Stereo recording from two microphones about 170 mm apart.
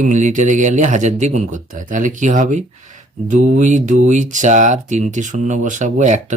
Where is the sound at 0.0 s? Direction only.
45° right (ahead or behind).